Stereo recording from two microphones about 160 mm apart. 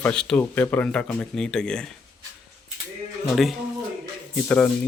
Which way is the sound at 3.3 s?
Centre (ahead or behind).